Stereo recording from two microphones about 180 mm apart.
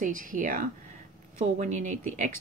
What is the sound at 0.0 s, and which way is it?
Speech, 50° right (ahead or behind).